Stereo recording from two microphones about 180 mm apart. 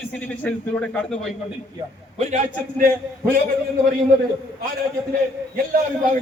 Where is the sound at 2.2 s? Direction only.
45° right (ahead or behind).